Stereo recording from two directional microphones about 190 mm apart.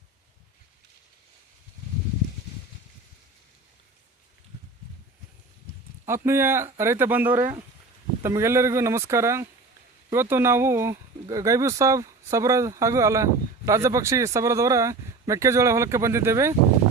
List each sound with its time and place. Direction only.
6.1 s speech: 15° right (ahead or behind)